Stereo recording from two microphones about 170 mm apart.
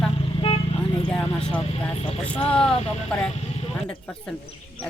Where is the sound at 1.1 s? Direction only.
5° left (ahead or behind).